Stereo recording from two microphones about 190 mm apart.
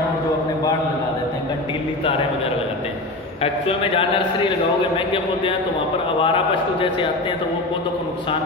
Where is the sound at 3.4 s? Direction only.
30° left (ahead or behind).